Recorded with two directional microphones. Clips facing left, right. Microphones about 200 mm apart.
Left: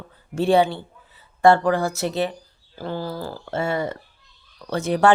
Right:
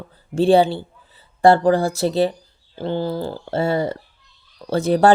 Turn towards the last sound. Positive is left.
turn(degrees=-35)  # may be behind; listen again after turning